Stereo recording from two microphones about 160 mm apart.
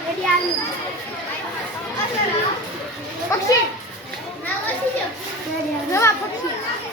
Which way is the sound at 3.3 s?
20° left (ahead or behind).